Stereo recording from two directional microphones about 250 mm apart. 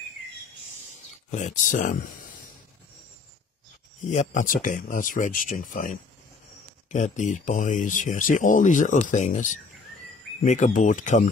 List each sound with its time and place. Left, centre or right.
1.3 s speech: left
4.1 s speech: left